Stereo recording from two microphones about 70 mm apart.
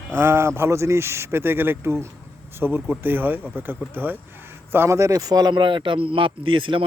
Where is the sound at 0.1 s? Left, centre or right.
Right.